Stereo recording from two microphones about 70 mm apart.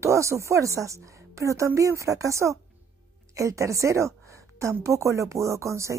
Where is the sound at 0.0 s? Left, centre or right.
Right.